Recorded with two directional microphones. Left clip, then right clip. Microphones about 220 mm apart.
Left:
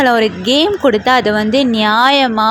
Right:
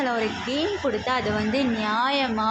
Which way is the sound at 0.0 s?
35° left (ahead or behind).